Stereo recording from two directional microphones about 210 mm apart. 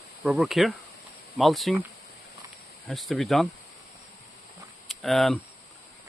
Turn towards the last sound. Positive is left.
turn(degrees=0)  # may be behind; listen again after turning